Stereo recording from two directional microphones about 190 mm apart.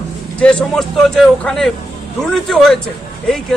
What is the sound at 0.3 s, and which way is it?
Speech, 5° left (ahead or behind).